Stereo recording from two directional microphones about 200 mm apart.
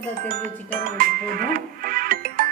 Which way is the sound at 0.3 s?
45° right (ahead or behind).